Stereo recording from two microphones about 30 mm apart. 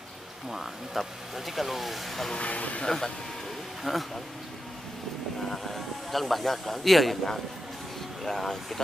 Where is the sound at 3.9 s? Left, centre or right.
Centre.